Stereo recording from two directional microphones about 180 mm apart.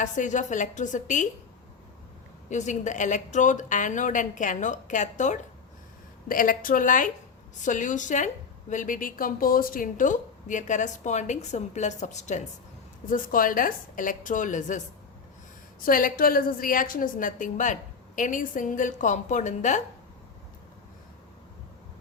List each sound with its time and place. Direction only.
0.0 s a woman's voice: 45° left (ahead or behind)
2.5 s a woman's voice: 40° left (ahead or behind)
15.8 s a woman's voice: 50° left (ahead or behind)